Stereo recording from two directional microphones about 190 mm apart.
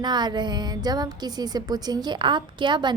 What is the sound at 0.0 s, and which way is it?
A woman's voice, 20° right (ahead or behind).